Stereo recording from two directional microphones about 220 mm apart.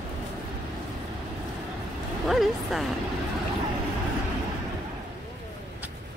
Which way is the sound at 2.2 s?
Centre (ahead or behind).